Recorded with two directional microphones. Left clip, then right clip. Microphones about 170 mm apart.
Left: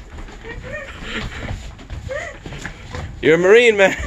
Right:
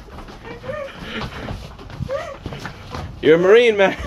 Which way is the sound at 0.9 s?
25° left (ahead or behind).